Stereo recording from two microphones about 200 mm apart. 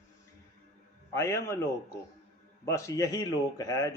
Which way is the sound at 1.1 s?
15° left (ahead or behind).